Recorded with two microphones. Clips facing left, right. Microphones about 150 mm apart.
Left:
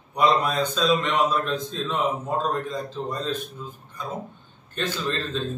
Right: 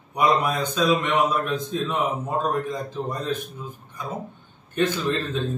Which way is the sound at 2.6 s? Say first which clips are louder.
Right 1 dB; 15° right (ahead or behind).